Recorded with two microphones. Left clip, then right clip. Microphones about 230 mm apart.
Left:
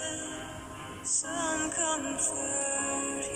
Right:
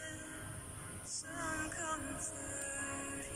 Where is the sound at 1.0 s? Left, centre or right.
Left.